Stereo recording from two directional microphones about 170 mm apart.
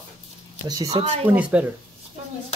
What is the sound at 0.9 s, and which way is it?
Speech, 35° right (ahead or behind).